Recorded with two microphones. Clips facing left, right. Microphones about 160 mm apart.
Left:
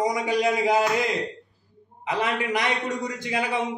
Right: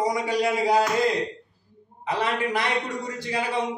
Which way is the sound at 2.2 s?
15° left (ahead or behind).